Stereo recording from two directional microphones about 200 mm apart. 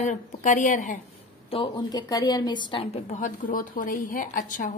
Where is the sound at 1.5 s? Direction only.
25° left (ahead or behind).